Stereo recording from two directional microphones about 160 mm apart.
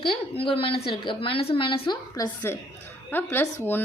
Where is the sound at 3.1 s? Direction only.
10° left (ahead or behind).